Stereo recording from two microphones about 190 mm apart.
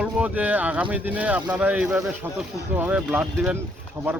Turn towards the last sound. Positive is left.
turn(degrees=-10)  # may be behind; listen again after turning